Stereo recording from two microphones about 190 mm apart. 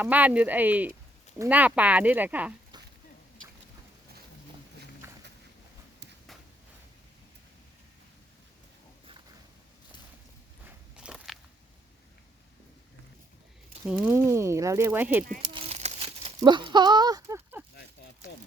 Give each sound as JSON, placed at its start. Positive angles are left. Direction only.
{"t": 0.0, "sound": "speech", "side_deg": -10}
{"t": 5.0, "sound": "a sound", "side_deg": -10}
{"t": 10.9, "sound": "walk", "side_deg": -5}
{"t": 13.8, "sound": "speech", "side_deg": -10}
{"t": 15.4, "sound": "crumpling", "side_deg": -30}
{"t": 16.4, "sound": "speech", "side_deg": -25}